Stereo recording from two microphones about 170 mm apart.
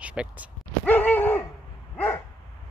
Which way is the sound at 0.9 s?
10° left (ahead or behind).